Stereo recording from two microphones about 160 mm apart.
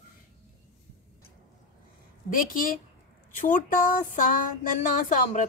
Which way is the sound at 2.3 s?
60° left (ahead or behind).